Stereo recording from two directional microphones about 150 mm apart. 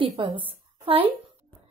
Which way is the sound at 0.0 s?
35° right (ahead or behind).